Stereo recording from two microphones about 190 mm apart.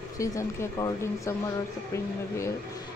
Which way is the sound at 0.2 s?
15° left (ahead or behind).